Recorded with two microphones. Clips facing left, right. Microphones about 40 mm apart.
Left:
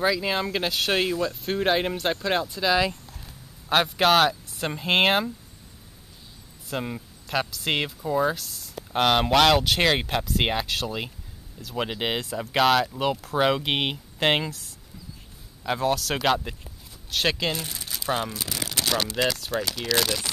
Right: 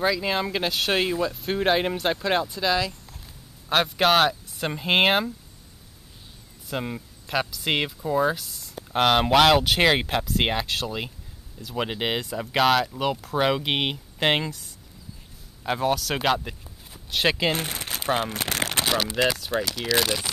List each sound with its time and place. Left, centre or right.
0.0 s speech: centre
6.7 s speech: centre
17.5 s speech: right
19.1 s speech: centre